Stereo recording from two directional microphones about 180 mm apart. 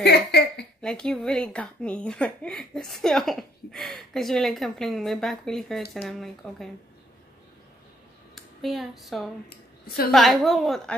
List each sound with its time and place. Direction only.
0.0 s a sound: 65° left (ahead or behind)
0.8 s speech: 5° left (ahead or behind)
8.6 s speech: centre (ahead or behind)